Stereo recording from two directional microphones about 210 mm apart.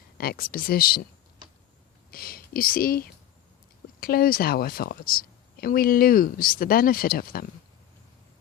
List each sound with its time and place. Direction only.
0.2 s a woman's voice: 45° left (ahead or behind)
2.0 s a sound: 45° left (ahead or behind)
4.0 s a woman's voice: 45° left (ahead or behind)